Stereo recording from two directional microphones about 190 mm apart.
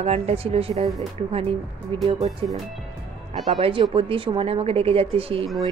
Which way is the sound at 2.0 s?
30° right (ahead or behind).